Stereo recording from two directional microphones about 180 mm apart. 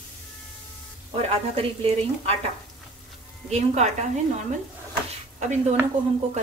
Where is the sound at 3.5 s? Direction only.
40° right (ahead or behind).